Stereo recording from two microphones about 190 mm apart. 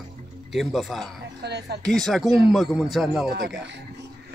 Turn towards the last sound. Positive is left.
turn(degrees=0)  # may be behind; listen again after turning